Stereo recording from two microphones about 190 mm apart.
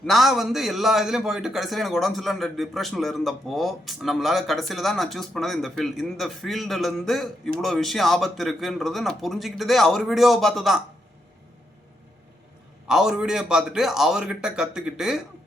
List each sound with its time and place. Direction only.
0.0 s a man's voice: centre (ahead or behind)
12.9 s a man's voice: centre (ahead or behind)